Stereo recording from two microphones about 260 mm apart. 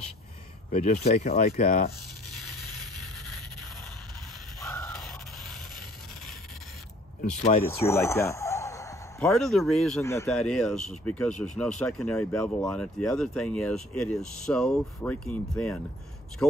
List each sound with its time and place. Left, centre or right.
0.7 s speech: left
2.6 s music: centre
4.6 s crow: centre
7.6 s a sound: centre
9.3 s speech: centre